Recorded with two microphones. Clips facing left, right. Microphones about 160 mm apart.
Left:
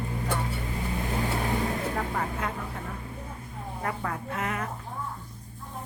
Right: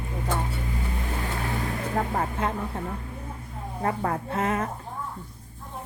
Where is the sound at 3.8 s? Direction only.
30° right (ahead or behind).